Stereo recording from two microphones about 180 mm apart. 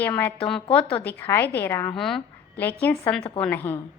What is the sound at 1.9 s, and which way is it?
A woman's voice, centre (ahead or behind).